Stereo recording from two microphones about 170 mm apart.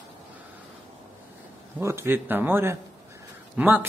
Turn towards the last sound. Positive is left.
turn(degrees=-10)  # may be behind; listen again after turning